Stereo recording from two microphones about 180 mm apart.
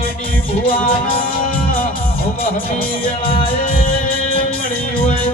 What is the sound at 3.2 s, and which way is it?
Music, 30° left (ahead or behind).